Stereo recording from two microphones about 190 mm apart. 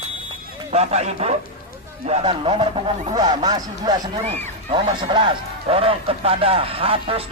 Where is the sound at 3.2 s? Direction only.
20° right (ahead or behind).